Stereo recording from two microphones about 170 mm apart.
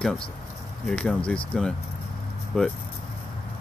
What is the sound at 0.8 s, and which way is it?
Speech, 5° left (ahead or behind).